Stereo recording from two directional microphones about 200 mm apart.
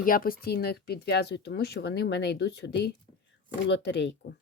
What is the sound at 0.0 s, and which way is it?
Speech, 45° left (ahead or behind).